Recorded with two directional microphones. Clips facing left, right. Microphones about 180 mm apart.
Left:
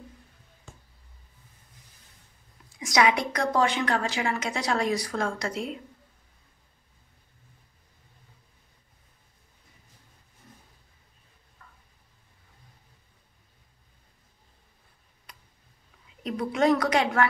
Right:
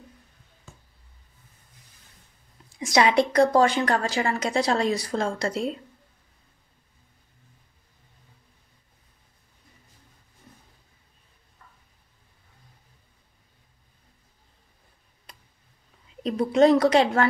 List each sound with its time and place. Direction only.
2.8 s a woman's voice: 30° right (ahead or behind)
16.2 s a woman's voice: 30° right (ahead or behind)